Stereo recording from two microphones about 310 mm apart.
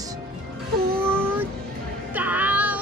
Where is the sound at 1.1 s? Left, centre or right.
Centre.